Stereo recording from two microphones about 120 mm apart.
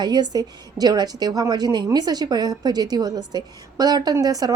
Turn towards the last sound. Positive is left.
turn(degrees=-35)  # may be behind; listen again after turning